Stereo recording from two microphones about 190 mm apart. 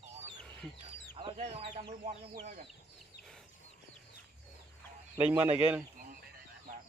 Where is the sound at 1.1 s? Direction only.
30° right (ahead or behind).